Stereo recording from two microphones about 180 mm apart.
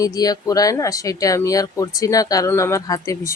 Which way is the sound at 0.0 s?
20° left (ahead or behind).